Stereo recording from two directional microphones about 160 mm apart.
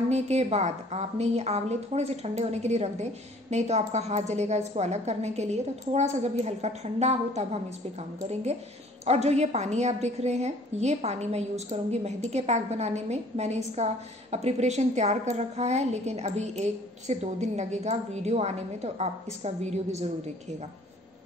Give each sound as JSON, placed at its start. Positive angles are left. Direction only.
{"t": 0.1, "sound": "a woman's voice", "side_deg": -45}
{"t": 9.0, "sound": "a woman's voice", "side_deg": -45}